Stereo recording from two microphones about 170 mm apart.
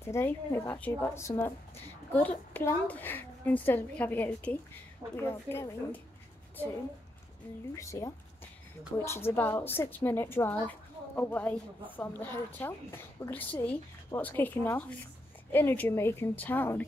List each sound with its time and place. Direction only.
0.0 s a woman's voice: 15° left (ahead or behind)
7.7 s a woman's voice: 20° left (ahead or behind)